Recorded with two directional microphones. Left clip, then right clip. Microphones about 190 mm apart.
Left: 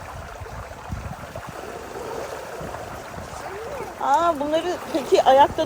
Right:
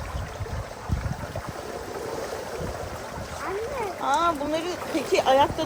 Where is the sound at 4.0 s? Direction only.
30° left (ahead or behind).